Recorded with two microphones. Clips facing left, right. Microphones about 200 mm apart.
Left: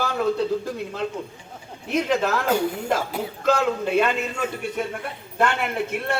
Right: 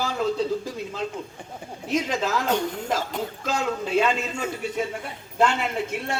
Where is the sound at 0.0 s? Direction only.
60° left (ahead or behind).